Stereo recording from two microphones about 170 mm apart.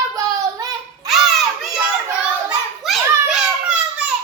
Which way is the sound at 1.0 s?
Centre (ahead or behind).